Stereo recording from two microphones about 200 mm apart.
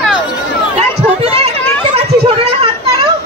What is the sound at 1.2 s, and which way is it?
Chatter, 30° right (ahead or behind).